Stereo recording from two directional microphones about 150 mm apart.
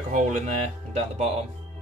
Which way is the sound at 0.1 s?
55° right (ahead or behind).